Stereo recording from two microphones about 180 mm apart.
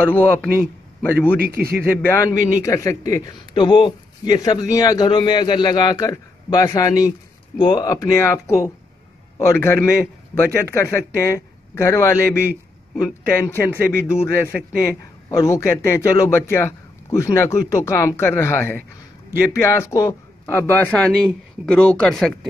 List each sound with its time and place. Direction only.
0.0 s a man's voice: 10° left (ahead or behind)
1.4 s a man's voice: 60° right (ahead or behind)
2.0 s a man's voice: 15° left (ahead or behind)